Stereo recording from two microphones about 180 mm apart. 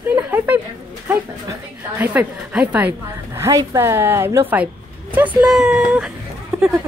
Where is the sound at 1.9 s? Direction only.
10° right (ahead or behind).